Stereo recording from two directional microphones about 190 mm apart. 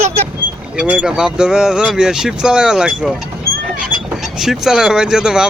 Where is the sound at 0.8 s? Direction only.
5° right (ahead or behind).